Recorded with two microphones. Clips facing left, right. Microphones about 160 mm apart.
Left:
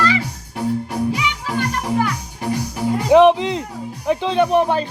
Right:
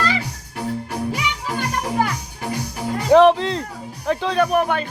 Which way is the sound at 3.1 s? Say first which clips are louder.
Left 1 dB; 15° left (ahead or behind).